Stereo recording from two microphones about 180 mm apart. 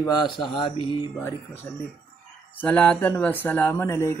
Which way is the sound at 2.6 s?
10° left (ahead or behind).